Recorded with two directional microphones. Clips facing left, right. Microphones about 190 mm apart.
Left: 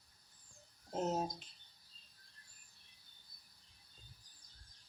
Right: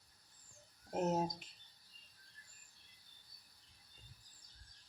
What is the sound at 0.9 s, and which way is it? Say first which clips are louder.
Speech: right 1 dB; 15° right (ahead or behind).